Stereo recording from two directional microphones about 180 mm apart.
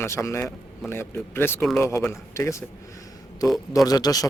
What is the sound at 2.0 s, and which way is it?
Speech, 15° left (ahead or behind).